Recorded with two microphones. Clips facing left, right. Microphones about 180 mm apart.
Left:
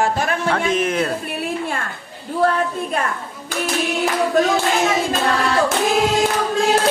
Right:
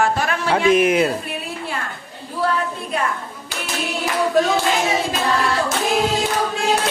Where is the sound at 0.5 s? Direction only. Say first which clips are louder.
Right 8 dB; 10° right (ahead or behind).